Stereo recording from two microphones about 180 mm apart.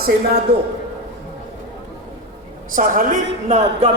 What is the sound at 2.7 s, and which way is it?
Speech, 45° right (ahead or behind).